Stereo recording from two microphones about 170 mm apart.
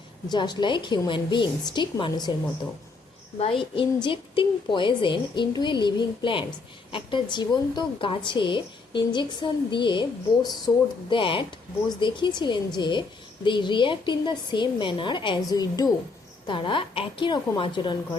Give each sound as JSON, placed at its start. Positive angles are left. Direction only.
{"t": 0.3, "sound": "a woman's voice", "side_deg": 25}
{"t": 3.3, "sound": "a woman's voice", "side_deg": 35}